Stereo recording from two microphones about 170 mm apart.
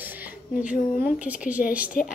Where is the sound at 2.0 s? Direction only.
50° left (ahead or behind).